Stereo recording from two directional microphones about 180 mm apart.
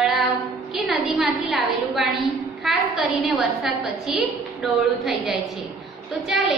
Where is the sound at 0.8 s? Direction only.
Centre (ahead or behind).